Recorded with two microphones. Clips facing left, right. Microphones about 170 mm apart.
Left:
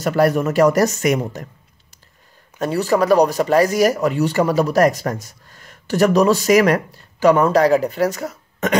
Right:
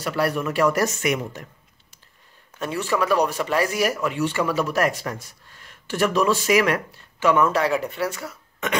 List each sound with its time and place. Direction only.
0.0 s speech: 45° left (ahead or behind)
2.6 s speech: 40° left (ahead or behind)